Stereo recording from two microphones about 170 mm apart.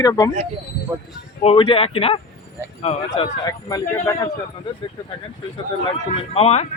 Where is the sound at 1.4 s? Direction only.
30° left (ahead or behind).